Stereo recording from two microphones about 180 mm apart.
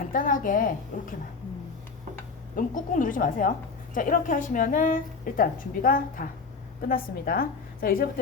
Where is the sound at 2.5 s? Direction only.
45° left (ahead or behind).